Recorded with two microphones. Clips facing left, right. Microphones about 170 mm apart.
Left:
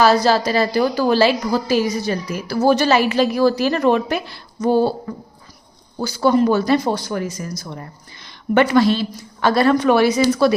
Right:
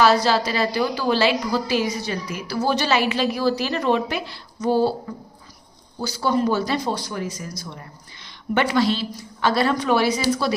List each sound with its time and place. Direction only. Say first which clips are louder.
0.0 s a woman's voice: left 3 dB; 40° left (ahead or behind)
6.0 s speech: left 6 dB; 55° left (ahead or behind)
8.2 s a woman's voice: left 6 dB; 50° left (ahead or behind)